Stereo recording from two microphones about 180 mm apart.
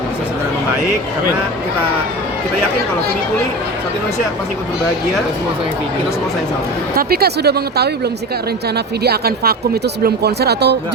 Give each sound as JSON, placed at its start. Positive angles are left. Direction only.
{"t": 6.9, "sound": "speech", "side_deg": -60}
{"t": 9.0, "sound": "speech", "side_deg": -60}